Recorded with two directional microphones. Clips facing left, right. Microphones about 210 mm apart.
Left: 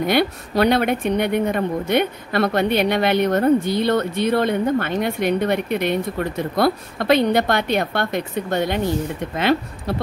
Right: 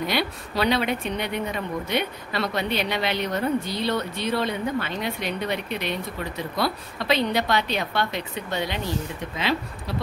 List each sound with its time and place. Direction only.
0.0 s speech: 55° left (ahead or behind)